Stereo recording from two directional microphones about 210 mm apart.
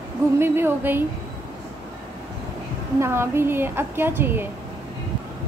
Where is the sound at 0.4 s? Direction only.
10° right (ahead or behind).